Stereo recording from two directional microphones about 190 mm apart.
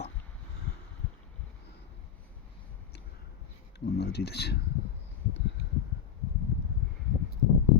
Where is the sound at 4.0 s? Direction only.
60° left (ahead or behind).